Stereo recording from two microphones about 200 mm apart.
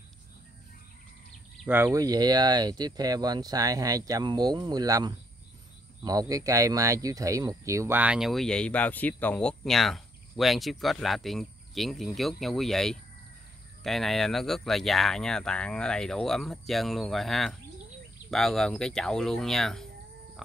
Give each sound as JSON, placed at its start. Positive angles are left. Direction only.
{"t": 1.7, "sound": "speech", "side_deg": -15}